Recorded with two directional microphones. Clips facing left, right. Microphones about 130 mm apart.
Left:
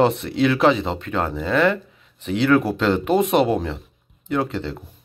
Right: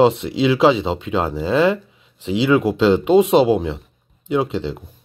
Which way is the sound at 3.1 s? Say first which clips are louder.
Right 4 dB; 25° right (ahead or behind).